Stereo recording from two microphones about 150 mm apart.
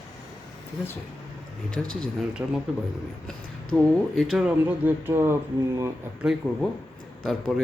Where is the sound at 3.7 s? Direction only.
Centre (ahead or behind); by 5.3 s 15° right (ahead or behind).